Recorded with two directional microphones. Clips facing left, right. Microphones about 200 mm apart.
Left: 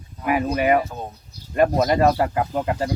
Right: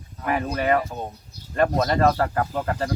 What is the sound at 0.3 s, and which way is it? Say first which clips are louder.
Speech: left 3 dB; 10° left (ahead or behind).